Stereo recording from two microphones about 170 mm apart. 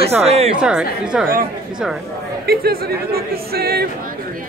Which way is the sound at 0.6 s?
5° right (ahead or behind).